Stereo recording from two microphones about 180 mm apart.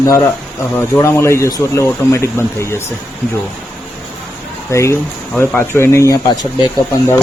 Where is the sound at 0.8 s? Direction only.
15° left (ahead or behind).